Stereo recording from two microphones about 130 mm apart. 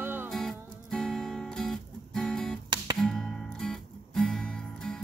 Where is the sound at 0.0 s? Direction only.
15° right (ahead or behind).